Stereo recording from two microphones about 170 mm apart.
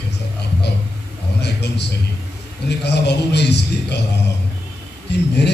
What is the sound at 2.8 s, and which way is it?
A man's voice, 80° left.